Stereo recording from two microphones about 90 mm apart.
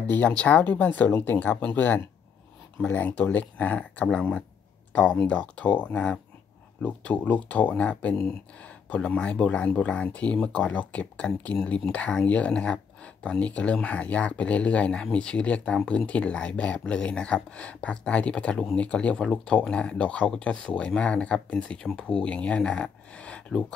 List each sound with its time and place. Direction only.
0.1 s speech: 15° left (ahead or behind)
2.8 s speech: 20° left (ahead or behind)